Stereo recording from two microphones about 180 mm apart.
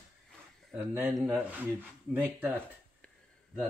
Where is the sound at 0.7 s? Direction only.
10° right (ahead or behind).